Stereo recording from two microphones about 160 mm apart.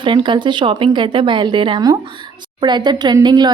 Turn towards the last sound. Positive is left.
turn(degrees=-25)  # may be behind; listen again after turning